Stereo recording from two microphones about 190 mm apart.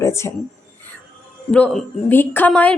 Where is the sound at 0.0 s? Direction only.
15° left (ahead or behind).